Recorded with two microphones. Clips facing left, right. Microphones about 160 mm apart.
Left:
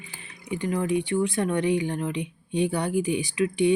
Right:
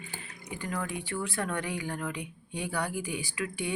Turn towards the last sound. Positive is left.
turn(degrees=20)  # may be behind; listen again after turning